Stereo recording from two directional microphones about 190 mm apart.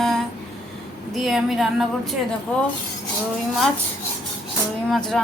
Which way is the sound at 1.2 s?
Centre (ahead or behind).